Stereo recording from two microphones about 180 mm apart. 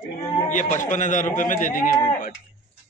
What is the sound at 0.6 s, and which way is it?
A man's voice, 45° left (ahead or behind).